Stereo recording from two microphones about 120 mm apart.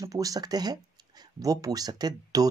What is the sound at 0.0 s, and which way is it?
Speech, 30° right (ahead or behind).